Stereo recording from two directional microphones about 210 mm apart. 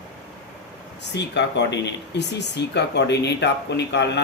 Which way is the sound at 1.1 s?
55° left (ahead or behind).